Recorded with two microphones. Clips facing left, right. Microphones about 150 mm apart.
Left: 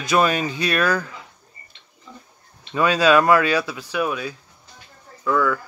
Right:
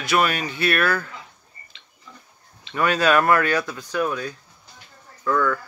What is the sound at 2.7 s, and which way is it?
Speech, 10° left (ahead or behind).